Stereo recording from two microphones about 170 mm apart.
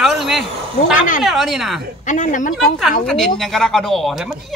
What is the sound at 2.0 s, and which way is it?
Speech, 50° left (ahead or behind).